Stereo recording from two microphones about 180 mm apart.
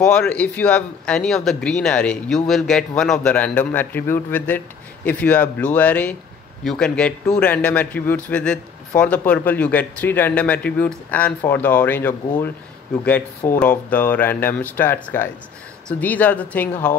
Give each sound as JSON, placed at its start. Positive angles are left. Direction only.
{"t": 0.0, "sound": "speech", "side_deg": 5}